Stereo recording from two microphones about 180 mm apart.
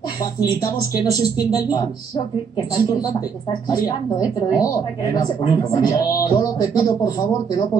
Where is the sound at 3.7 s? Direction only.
20° left (ahead or behind).